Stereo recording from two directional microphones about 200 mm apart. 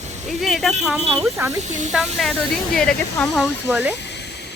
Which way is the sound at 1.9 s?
Centre (ahead or behind).